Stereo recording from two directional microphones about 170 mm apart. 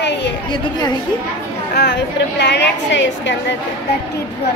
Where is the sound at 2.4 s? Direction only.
90° left.